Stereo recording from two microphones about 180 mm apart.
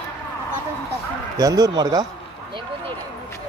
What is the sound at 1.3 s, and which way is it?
Speech, 20° right (ahead or behind).